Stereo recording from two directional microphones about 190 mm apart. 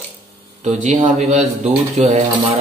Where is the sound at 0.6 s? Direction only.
40° right (ahead or behind).